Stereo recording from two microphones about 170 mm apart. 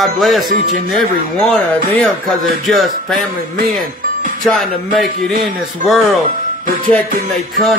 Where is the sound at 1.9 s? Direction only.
5° left (ahead or behind).